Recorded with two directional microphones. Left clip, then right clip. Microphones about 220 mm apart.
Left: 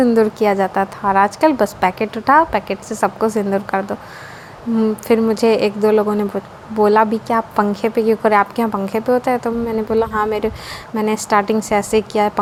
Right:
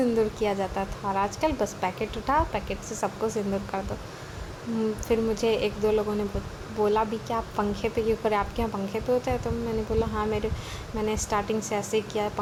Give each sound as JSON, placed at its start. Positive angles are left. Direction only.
{"t": 0.0, "sound": "a woman's voice", "side_deg": 35}